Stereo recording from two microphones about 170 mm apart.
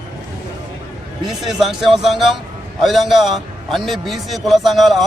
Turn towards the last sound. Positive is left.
turn(degrees=0)  # may be behind; listen again after turning